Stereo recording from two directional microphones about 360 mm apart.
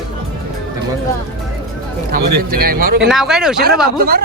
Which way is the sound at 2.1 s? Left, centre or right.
Right.